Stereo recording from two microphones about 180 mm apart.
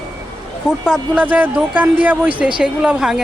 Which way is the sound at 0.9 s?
10° right (ahead or behind).